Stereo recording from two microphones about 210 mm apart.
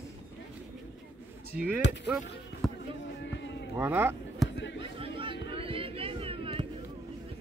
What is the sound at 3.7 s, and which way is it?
Speech, 10° right (ahead or behind).